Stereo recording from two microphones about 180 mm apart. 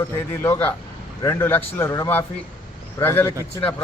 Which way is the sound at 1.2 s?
15° left (ahead or behind).